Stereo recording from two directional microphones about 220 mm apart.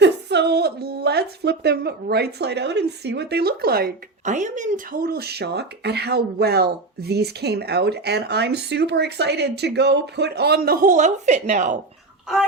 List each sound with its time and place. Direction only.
0.0 s speech: 50° right (ahead or behind); by 11.8 s 35° right (ahead or behind)